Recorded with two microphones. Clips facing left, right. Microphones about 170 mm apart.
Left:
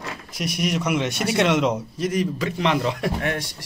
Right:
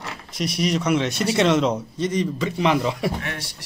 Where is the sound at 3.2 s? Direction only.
50° left (ahead or behind).